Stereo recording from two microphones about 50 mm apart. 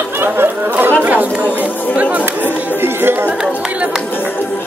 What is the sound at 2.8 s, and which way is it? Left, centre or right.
Speech, right.